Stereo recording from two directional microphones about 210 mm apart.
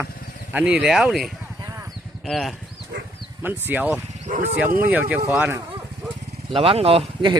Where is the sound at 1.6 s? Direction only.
15° right (ahead or behind).